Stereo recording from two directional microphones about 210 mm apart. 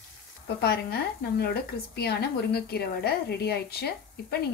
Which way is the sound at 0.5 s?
50° left (ahead or behind).